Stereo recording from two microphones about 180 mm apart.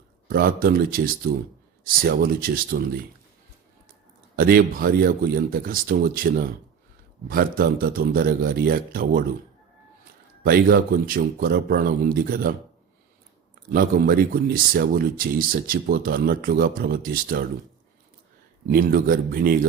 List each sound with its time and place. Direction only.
0.3 s speech: 55° right (ahead or behind)
4.4 s speech: 55° right (ahead or behind)
10.4 s speech: 55° right (ahead or behind)
13.7 s speech: 55° right (ahead or behind)
18.7 s speech: 50° right (ahead or behind)